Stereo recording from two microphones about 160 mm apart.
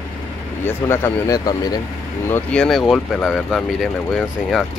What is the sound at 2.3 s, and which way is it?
Speech, 5° left (ahead or behind).